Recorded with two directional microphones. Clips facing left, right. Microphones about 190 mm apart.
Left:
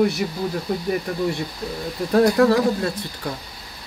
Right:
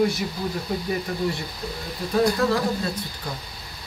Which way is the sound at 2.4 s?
65° left (ahead or behind).